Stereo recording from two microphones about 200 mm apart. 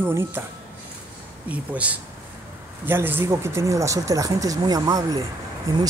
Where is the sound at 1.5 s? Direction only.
5° right (ahead or behind).